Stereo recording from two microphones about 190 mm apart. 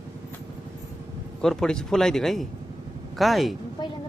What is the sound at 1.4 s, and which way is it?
Speech, 5° left (ahead or behind).